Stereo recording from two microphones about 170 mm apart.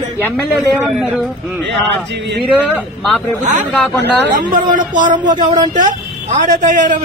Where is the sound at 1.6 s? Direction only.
90° right.